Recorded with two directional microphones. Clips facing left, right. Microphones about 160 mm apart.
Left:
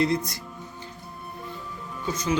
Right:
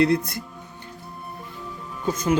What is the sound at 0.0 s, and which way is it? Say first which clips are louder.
Speech: right 4 dB; 65° right (ahead or behind).